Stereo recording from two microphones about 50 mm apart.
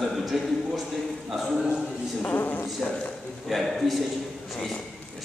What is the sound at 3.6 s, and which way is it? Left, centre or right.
Speech, centre.